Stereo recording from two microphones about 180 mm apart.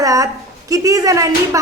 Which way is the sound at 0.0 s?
20° right (ahead or behind).